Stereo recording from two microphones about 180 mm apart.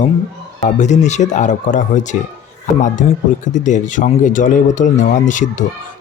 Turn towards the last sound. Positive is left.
turn(degrees=45)  # may be behind; listen again after turning